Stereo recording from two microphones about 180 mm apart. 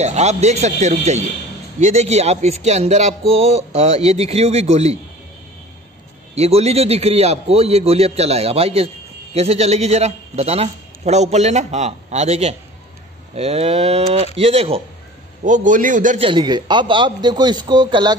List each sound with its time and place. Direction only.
0.0 s a man's voice: 40° right (ahead or behind)
6.3 s a man's voice: 35° right (ahead or behind)
15.4 s a man's voice: 45° right (ahead or behind)
16.2 s a man's voice: 25° right (ahead or behind)